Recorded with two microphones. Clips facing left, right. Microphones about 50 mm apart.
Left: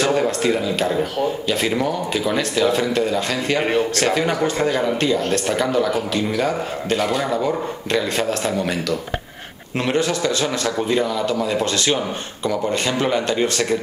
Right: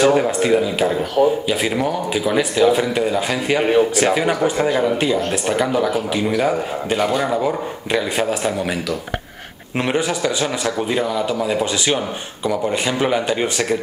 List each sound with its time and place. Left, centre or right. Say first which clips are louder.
0.0 s speech: right 3 dB; centre
9.8 s speech: even; centre